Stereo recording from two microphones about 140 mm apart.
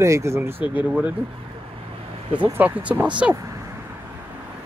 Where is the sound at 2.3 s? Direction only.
10° right (ahead or behind).